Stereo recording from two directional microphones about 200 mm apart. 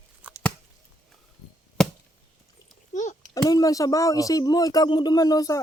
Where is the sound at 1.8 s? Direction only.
Centre (ahead or behind).